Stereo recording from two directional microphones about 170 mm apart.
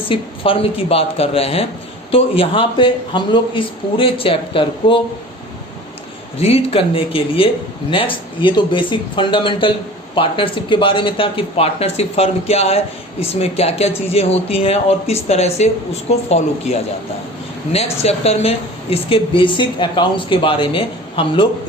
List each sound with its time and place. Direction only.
0.1 s speech: 30° left (ahead or behind)
6.4 s speech: 35° left (ahead or behind)
18.0 s speech: 35° left (ahead or behind)